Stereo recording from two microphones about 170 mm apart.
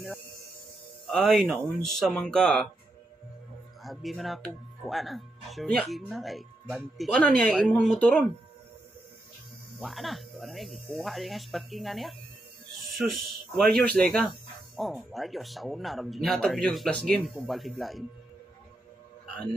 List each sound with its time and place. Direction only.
1.1 s speech: centre (ahead or behind)
3.8 s speech: centre (ahead or behind)
9.8 s speech: centre (ahead or behind)